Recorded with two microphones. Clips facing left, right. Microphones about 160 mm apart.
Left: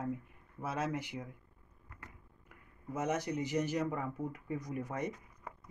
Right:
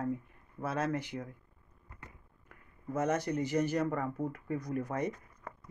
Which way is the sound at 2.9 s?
15° left (ahead or behind).